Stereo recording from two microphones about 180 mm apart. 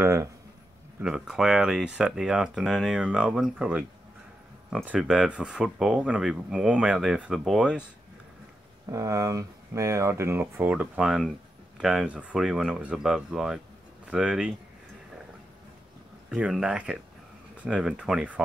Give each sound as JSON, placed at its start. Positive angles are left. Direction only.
{"t": 0.0, "sound": "speech", "side_deg": -15}
{"t": 1.0, "sound": "speech", "side_deg": -5}
{"t": 8.9, "sound": "speech", "side_deg": -15}
{"t": 16.3, "sound": "speech", "side_deg": -5}